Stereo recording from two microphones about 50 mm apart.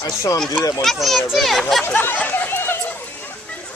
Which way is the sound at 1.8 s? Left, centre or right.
Left.